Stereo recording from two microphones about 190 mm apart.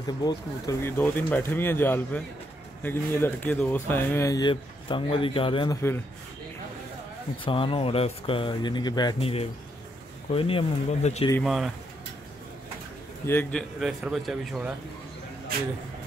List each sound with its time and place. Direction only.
0.2 s speech: 20° left (ahead or behind)
7.4 s speech: 25° left (ahead or behind)
11.4 s a man's voice: centre (ahead or behind)
13.2 s a man's voice: 10° left (ahead or behind)